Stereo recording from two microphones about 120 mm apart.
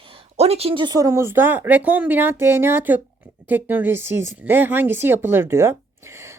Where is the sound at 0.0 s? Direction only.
55° right (ahead or behind).